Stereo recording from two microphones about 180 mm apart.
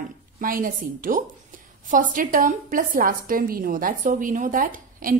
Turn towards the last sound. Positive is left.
turn(degrees=-50)  # may be behind; listen again after turning